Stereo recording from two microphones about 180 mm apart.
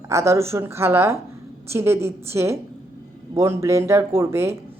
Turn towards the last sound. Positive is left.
turn(degrees=-15)  # may be behind; listen again after turning